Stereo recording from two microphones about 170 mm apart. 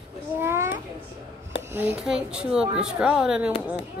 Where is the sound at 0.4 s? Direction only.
15° right (ahead or behind).